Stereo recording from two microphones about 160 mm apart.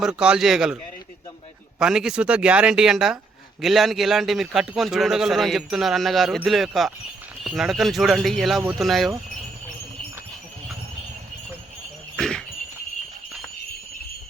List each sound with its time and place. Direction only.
0.0 s a man's voice: 5° right (ahead or behind)
1.8 s a man's voice: 5° right (ahead or behind)
12.1 s a sound: 5° left (ahead or behind)